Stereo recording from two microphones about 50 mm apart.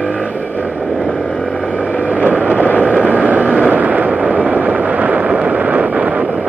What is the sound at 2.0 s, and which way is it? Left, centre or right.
Vehicle, right.